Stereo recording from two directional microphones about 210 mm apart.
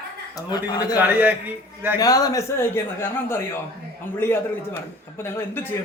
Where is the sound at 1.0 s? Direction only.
10° right (ahead or behind).